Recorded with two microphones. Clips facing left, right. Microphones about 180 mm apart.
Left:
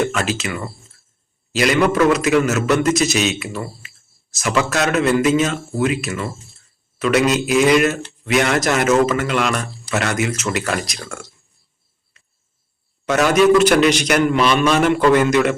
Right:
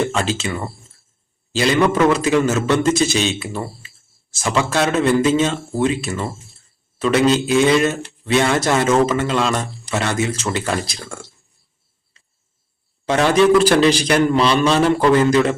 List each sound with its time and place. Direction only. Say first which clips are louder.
0.0 s a man's voice: even; 30° right (ahead or behind)
13.1 s a man's voice: even; 30° right (ahead or behind)